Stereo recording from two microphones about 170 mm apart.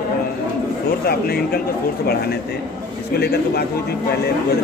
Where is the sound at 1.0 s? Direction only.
65° left (ahead or behind).